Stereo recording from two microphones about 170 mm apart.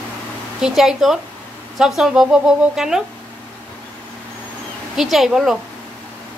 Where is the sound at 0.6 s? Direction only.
Centre (ahead or behind).